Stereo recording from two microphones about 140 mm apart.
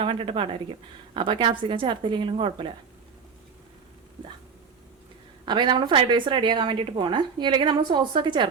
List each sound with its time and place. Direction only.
0.0 s a woman's voice: 40° right (ahead or behind)
5.5 s a woman's voice: 35° right (ahead or behind)